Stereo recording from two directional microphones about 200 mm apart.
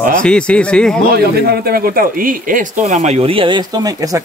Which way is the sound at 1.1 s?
50° right (ahead or behind).